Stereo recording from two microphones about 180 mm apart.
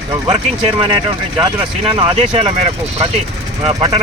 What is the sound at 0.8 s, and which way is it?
Speech, 30° right (ahead or behind).